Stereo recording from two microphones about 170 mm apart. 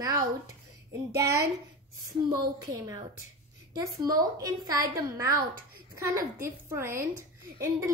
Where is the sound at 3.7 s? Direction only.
20° right (ahead or behind).